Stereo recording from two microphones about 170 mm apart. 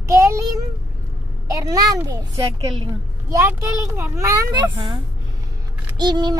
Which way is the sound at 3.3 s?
15° right (ahead or behind).